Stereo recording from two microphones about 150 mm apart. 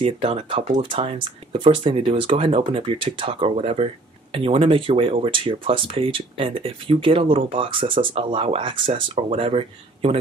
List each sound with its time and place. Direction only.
0.0 s speech: 40° right (ahead or behind)